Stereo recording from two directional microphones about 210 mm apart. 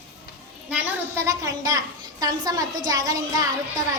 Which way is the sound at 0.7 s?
15° right (ahead or behind).